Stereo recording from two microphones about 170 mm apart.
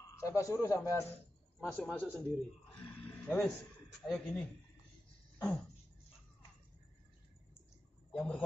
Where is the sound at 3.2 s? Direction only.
5° left (ahead or behind).